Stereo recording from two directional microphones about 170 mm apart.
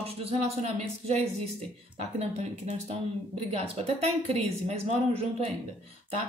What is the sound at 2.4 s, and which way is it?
Speech, 40° right (ahead or behind).